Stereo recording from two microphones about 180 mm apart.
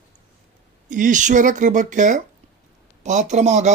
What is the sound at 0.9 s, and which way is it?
Speech, 45° right (ahead or behind).